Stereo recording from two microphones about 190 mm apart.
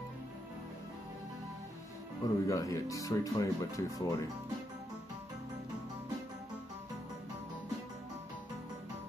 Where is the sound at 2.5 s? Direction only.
15° left (ahead or behind).